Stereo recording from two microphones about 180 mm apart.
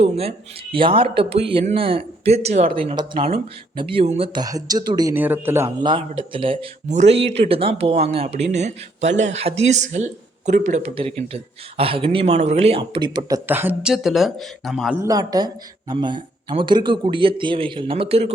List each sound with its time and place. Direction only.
0.0 s speech: 35° right (ahead or behind)
5.1 s speech: 10° right (ahead or behind)
5.8 s speech: 25° right (ahead or behind); by 14.9 s centre (ahead or behind)
15.0 s speech: 20° right (ahead or behind)